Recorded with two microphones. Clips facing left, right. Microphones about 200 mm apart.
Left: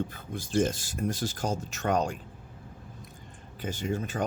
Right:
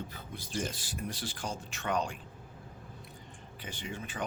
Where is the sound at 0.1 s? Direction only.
45° left (ahead or behind).